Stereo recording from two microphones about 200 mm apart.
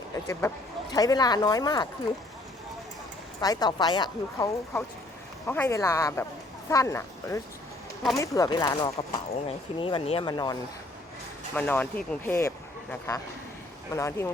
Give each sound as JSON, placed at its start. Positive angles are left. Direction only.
{"t": 0.3, "sound": "speech", "side_deg": 15}
{"t": 3.4, "sound": "speech", "side_deg": 20}
{"t": 11.5, "sound": "speech", "side_deg": 10}